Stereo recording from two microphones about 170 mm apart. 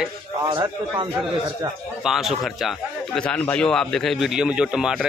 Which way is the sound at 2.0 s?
Centre (ahead or behind).